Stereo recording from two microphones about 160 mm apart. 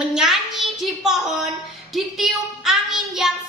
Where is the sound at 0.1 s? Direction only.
Centre (ahead or behind).